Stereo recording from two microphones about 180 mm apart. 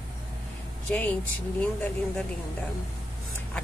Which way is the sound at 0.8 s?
10° left (ahead or behind).